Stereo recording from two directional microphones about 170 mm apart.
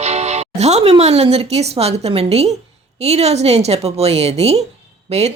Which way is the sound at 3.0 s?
40° right (ahead or behind).